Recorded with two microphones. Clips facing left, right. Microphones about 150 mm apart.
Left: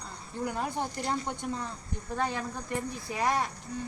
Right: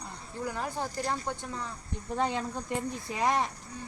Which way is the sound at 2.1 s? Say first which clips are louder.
Right 2 dB; 20° right (ahead or behind).